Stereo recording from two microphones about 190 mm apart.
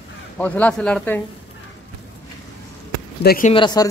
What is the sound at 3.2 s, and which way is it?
Speech, 50° left (ahead or behind).